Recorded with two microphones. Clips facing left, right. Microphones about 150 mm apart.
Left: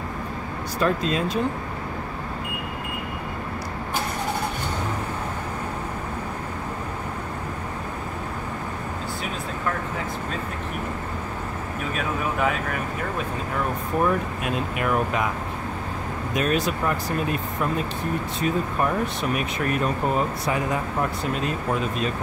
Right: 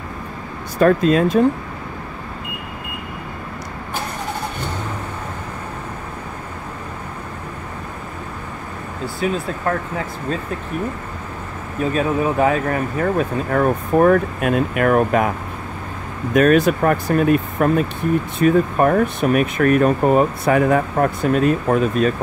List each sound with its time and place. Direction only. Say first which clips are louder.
0.7 s speech: right 9 dB; 55° right (ahead or behind)
11.9 s speech: right 9 dB; 40° right (ahead or behind); by 15.3 s 55° right (ahead or behind)
16.3 s speech: right 10 dB; 55° right (ahead or behind)